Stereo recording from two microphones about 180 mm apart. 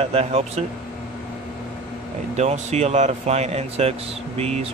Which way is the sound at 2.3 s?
40° right (ahead or behind).